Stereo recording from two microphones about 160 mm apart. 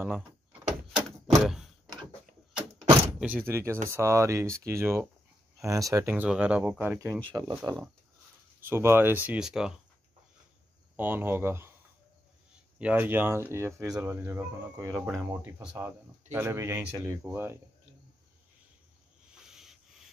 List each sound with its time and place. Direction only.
0.0 s door: 10° right (ahead or behind)
1.3 s a sound: centre (ahead or behind)
3.2 s speech: 10° right (ahead or behind)
7.3 s speech: 25° right (ahead or behind); by 9.8 s 5° right (ahead or behind)
11.0 s speech: 15° right (ahead or behind)
12.7 s speech: 10° right (ahead or behind)
19.3 s a sound: 5° right (ahead or behind)